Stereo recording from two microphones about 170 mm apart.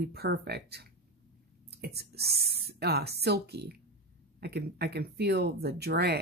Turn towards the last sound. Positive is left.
turn(degrees=-70)  # may be behind; listen again after turning